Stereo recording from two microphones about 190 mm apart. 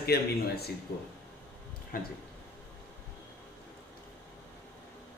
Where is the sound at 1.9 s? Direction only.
50° left (ahead or behind).